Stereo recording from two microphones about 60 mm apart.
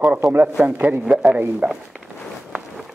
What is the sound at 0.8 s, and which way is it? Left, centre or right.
A man's voice, right.